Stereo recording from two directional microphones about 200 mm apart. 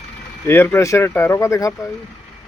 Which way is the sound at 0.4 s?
10° left (ahead or behind).